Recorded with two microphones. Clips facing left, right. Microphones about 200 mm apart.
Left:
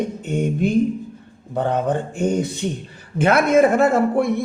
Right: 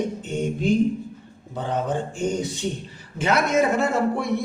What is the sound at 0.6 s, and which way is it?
Speech, 55° left (ahead or behind).